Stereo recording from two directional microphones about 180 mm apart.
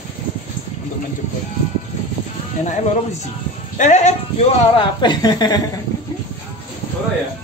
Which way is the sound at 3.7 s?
40° left (ahead or behind).